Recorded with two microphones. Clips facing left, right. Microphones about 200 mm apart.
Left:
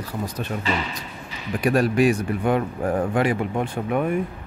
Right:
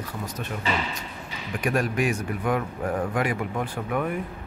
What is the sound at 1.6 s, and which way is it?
Speech, 35° left (ahead or behind).